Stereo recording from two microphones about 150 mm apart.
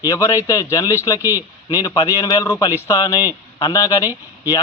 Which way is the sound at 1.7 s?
25° left (ahead or behind).